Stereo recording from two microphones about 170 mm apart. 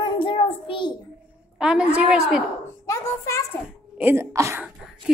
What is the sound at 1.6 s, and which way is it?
Speech, 5° right (ahead or behind).